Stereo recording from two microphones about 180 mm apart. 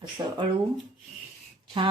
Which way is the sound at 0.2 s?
20° right (ahead or behind).